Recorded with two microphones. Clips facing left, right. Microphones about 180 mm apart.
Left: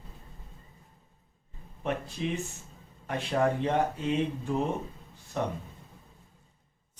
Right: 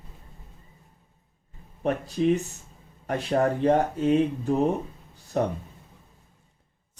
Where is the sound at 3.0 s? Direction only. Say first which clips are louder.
Right 4 dB; 40° right (ahead or behind).